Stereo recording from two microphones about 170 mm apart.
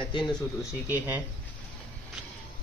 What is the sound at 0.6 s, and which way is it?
Speech, 10° right (ahead or behind).